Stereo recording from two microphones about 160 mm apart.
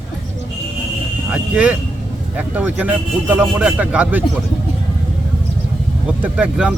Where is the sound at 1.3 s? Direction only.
5° right (ahead or behind).